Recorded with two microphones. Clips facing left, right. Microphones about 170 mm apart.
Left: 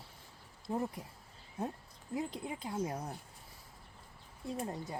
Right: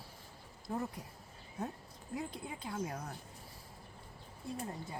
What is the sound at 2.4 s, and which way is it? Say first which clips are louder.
Speech: left 3 dB; 25° left (ahead or behind).